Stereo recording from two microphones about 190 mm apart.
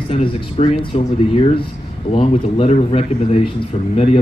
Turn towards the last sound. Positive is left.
turn(degrees=30)  # may be behind; listen again after turning